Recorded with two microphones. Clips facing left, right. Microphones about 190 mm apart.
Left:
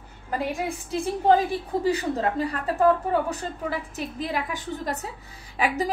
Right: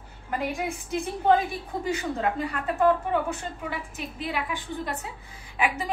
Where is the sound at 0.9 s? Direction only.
35° left (ahead or behind).